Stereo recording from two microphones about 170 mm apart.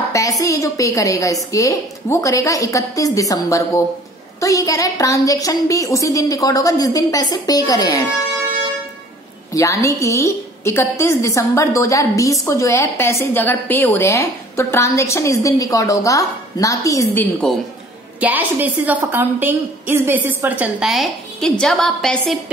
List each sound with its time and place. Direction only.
0.1 s a woman's voice: 20° left (ahead or behind)
9.5 s a woman's voice: 20° left (ahead or behind)
18.2 s a woman's voice: 10° right (ahead or behind)